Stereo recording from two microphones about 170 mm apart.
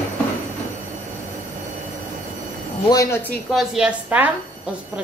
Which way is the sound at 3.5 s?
Centre (ahead or behind).